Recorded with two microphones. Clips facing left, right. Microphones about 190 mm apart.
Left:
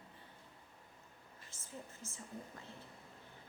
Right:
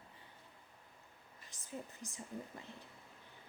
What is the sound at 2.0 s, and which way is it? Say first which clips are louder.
Speech: right 2 dB; 15° right (ahead or behind).